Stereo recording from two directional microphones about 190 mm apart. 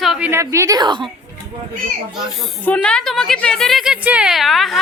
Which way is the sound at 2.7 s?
5° left (ahead or behind).